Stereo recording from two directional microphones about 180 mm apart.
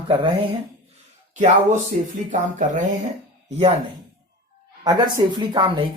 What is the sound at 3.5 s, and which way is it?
Speech, 40° right (ahead or behind).